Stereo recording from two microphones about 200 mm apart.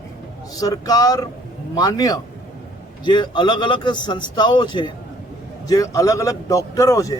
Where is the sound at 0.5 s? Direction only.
20° left (ahead or behind).